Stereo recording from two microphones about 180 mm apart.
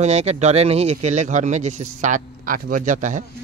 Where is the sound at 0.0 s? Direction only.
40° right (ahead or behind).